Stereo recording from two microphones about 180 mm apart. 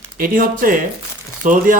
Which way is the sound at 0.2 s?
50° right (ahead or behind).